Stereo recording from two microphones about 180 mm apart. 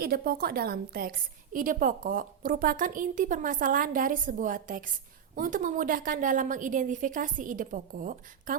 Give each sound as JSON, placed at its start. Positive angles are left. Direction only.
{"t": 0.0, "sound": "a woman's voice", "side_deg": -55}